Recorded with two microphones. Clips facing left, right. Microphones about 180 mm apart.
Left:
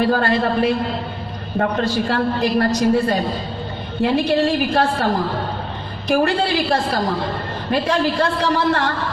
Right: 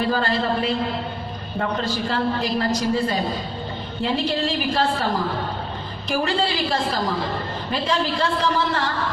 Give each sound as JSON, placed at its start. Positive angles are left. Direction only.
{"t": 0.0, "sound": "a woman's voice", "side_deg": 60}
{"t": 6.1, "sound": "a woman's voice", "side_deg": 60}